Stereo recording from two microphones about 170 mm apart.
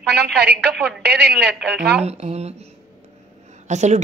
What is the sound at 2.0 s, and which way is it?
Speech, 40° right (ahead or behind).